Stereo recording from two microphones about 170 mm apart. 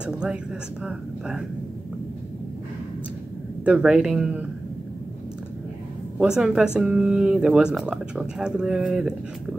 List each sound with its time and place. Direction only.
0.0 s speech: 5° right (ahead or behind)
3.6 s speech: 5° right (ahead or behind)
6.1 s speech: 5° right (ahead or behind)